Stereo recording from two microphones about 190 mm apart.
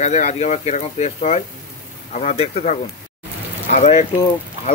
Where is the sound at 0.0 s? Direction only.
35° left (ahead or behind).